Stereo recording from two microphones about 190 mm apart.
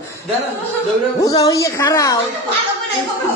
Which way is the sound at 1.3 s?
20° left (ahead or behind).